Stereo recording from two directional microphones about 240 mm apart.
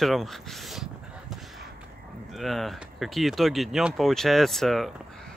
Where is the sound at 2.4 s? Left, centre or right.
Centre.